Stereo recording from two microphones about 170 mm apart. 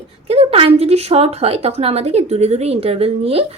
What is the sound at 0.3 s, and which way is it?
Speech, 35° right (ahead or behind).